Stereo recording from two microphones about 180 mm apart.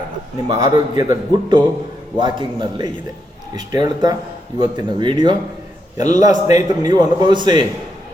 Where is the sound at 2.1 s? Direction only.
25° right (ahead or behind).